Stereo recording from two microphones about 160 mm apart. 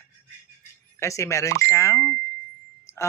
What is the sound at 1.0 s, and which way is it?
Speech, 20° left (ahead or behind).